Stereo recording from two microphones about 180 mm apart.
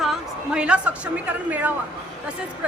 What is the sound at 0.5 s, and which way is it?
A woman's voice, 5° right (ahead or behind).